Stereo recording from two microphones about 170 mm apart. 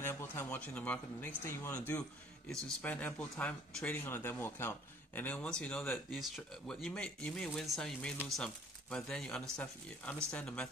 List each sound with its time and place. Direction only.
0.0 s speech: 15° left (ahead or behind)